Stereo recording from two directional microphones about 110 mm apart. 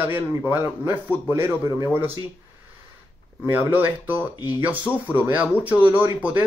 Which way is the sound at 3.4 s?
20° right (ahead or behind).